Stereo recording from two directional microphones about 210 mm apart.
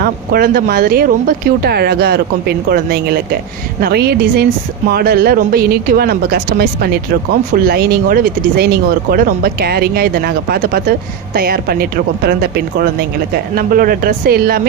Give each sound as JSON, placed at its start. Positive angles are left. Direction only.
{"t": 0.0, "sound": "speech", "side_deg": -45}